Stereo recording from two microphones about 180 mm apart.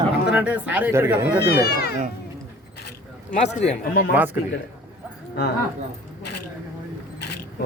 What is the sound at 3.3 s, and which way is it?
Speech, 40° left (ahead or behind).